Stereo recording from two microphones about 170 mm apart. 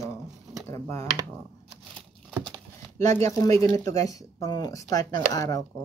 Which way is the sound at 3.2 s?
20° left (ahead or behind).